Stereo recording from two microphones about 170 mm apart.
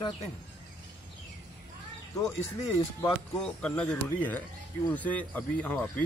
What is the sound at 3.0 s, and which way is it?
Speech, 5° left (ahead or behind).